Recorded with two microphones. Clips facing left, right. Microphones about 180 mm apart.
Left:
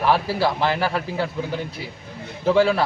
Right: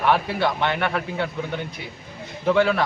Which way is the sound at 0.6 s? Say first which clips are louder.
Left 2 dB; 30° left (ahead or behind).